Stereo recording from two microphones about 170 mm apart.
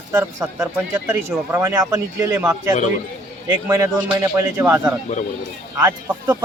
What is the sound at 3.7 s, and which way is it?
Speech, 15° right (ahead or behind).